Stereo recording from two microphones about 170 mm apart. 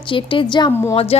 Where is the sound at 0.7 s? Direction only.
15° left (ahead or behind).